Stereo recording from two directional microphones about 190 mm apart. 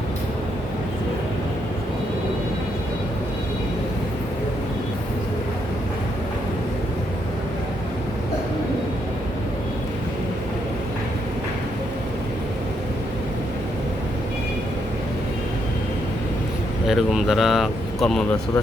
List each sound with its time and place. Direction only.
16.9 s speech: centre (ahead or behind)